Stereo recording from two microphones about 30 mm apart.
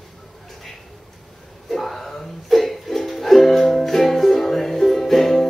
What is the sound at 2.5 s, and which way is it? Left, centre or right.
Music, centre.